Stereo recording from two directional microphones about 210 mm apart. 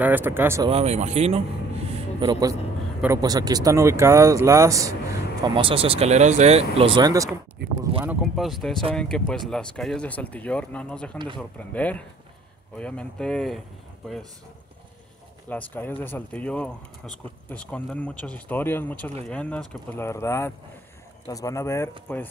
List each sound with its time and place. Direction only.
0.0 s speech: 10° right (ahead or behind)
0.7 s speech: 30° right (ahead or behind)
1.9 s a sound: 25° right (ahead or behind)
3.0 s speech: 15° right (ahead or behind)
7.6 s a sound: 50° right (ahead or behind)
8.0 s speech: 5° right (ahead or behind)
15.5 s speech: 10° left (ahead or behind)